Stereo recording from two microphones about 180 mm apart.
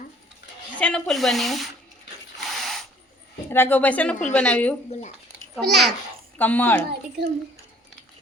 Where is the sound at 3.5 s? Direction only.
10° left (ahead or behind).